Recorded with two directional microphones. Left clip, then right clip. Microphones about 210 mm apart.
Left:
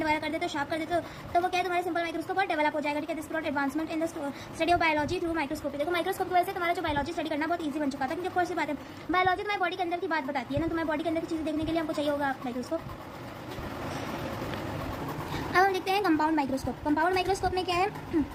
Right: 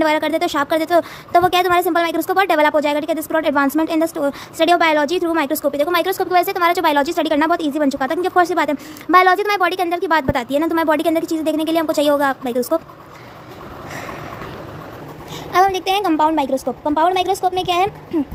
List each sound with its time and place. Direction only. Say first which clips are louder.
0.0 s a woman's voice: right 13 dB; 55° right (ahead or behind)
15.5 s a woman's voice: right 10 dB; 35° right (ahead or behind)